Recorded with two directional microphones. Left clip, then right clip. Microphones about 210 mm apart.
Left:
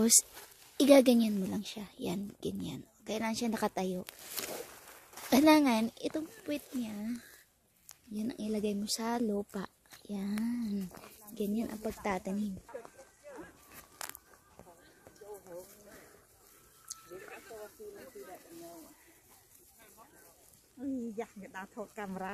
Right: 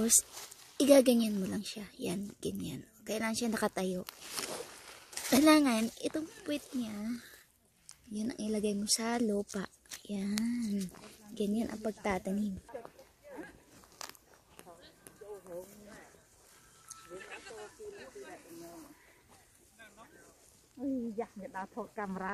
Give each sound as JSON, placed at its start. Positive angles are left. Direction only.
{"t": 0.7, "sound": "speech", "side_deg": 20}
{"t": 5.3, "sound": "speech", "side_deg": 15}
{"t": 8.1, "sound": "speech", "side_deg": 10}
{"t": 14.0, "sound": "a sound", "side_deg": 30}
{"t": 20.8, "sound": "speech", "side_deg": 35}